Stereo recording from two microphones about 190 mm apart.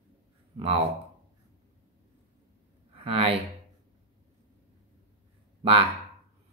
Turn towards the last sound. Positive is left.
turn(degrees=-30)  # may be behind; listen again after turning